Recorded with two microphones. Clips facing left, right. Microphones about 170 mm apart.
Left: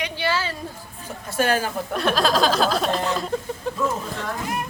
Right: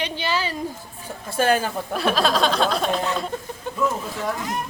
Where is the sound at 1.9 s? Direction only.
Centre (ahead or behind).